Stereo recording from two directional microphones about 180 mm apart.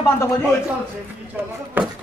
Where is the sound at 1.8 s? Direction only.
10° right (ahead or behind).